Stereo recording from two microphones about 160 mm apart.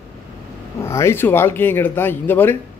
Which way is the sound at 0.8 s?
15° left (ahead or behind).